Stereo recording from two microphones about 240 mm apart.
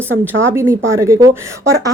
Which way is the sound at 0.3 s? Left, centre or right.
Centre.